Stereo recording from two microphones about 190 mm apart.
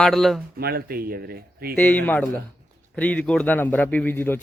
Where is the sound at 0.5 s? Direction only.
55° right (ahead or behind).